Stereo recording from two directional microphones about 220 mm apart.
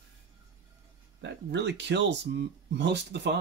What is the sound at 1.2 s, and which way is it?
Speech, 50° right (ahead or behind).